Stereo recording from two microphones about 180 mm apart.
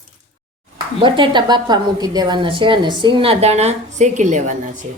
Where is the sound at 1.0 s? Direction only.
25° right (ahead or behind); by 4.9 s 45° right (ahead or behind).